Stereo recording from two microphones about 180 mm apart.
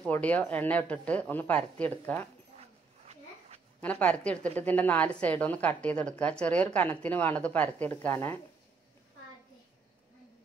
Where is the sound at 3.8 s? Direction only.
5° left (ahead or behind).